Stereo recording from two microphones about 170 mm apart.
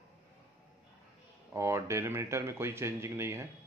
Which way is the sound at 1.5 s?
15° right (ahead or behind).